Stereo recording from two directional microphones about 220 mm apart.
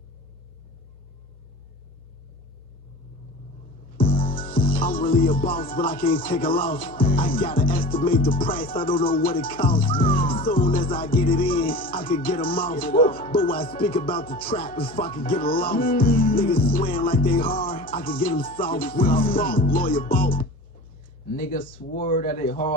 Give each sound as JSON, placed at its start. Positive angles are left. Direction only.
{"t": 3.9, "sound": "music", "side_deg": 40}